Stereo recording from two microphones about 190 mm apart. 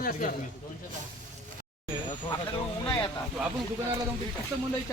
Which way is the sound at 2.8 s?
10° left (ahead or behind).